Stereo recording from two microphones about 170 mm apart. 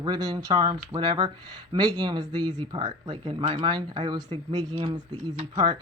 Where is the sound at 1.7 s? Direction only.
25° right (ahead or behind).